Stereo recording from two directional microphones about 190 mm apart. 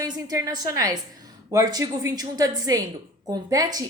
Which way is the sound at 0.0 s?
15° right (ahead or behind).